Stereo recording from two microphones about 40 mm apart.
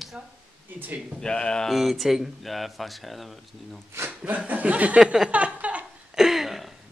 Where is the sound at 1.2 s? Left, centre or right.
Left.